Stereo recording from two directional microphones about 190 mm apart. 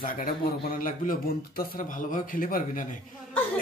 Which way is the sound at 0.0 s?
50° left (ahead or behind).